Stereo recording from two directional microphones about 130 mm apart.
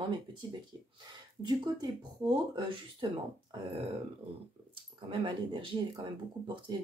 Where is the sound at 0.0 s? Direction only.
40° right (ahead or behind).